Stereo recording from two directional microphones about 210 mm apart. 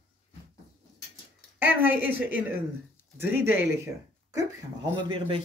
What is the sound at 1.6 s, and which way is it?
Speech, 10° right (ahead or behind).